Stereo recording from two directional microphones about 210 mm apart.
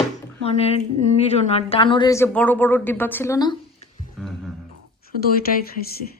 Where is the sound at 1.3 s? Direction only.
30° left (ahead or behind).